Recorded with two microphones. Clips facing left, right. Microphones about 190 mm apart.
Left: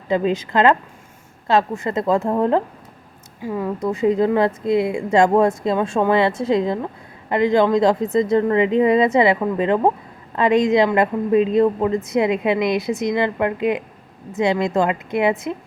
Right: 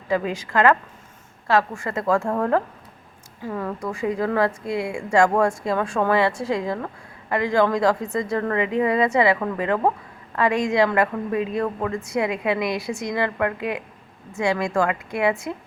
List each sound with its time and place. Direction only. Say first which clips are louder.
0.1 s a woman's voice: left 4 dB; 25° left (ahead or behind)
3.8 s speech: left 8 dB; 25° left (ahead or behind)